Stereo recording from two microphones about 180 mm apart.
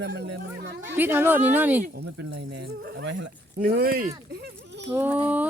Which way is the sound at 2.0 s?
65° right (ahead or behind).